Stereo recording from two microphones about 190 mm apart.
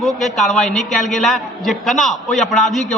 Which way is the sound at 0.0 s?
Centre (ahead or behind).